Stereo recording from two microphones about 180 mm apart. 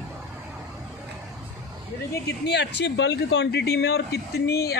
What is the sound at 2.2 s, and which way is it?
Speech, 70° left (ahead or behind).